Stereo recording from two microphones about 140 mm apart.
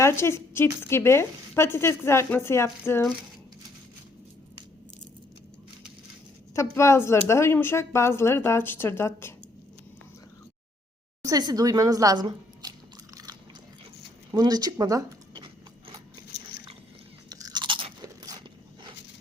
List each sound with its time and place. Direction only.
0.0 s a woman's voice: 20° left (ahead or behind)
6.5 s speech: 20° left (ahead or behind)
11.2 s speech: 25° right (ahead or behind)
14.3 s speech: 30° right (ahead or behind)
17.2 s crunch: 25° right (ahead or behind)
18.2 s biting: 30° right (ahead or behind)